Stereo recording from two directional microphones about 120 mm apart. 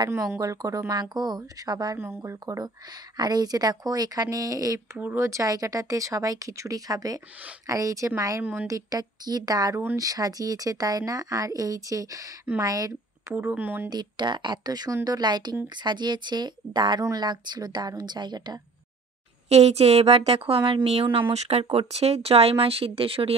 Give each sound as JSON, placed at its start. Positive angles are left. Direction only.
{"t": 0.1, "sound": "speech", "side_deg": -25}
{"t": 2.0, "sound": "speech", "side_deg": -25}
{"t": 13.3, "sound": "speech", "side_deg": -15}
{"t": 13.8, "sound": "speech", "side_deg": -35}
{"t": 19.5, "sound": "a woman's voice", "side_deg": -60}